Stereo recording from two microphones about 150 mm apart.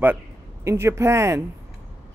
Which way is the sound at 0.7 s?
15° right (ahead or behind).